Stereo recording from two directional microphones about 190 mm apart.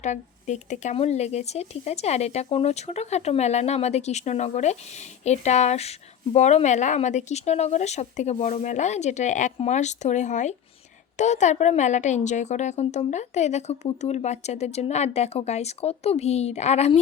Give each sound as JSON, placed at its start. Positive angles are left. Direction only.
{"t": 0.0, "sound": "speech", "side_deg": 40}